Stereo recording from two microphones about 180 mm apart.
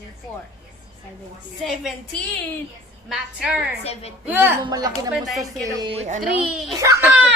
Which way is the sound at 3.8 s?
35° left (ahead or behind).